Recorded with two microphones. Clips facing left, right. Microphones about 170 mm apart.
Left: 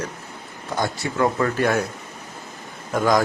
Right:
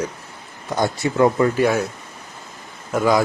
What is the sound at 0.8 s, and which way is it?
Speech, 20° right (ahead or behind).